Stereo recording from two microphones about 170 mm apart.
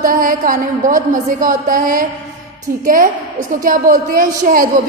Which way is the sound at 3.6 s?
55° right (ahead or behind).